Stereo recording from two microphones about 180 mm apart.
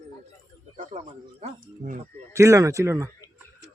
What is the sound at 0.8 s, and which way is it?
Speech, 45° right (ahead or behind).